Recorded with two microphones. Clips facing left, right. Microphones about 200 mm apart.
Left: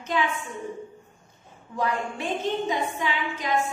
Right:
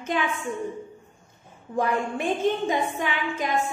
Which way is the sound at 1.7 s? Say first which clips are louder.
Right 3 dB; 50° right (ahead or behind).